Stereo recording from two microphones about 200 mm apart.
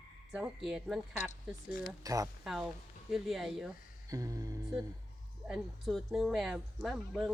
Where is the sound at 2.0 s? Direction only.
15° right (ahead or behind).